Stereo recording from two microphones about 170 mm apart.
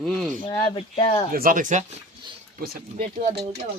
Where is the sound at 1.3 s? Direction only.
55° right (ahead or behind).